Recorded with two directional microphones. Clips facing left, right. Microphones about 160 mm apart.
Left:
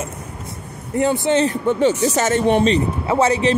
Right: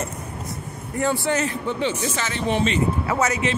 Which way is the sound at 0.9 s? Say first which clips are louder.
Left 5 dB; 20° left (ahead or behind).